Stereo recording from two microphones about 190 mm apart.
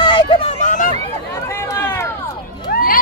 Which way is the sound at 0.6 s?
40° left (ahead or behind).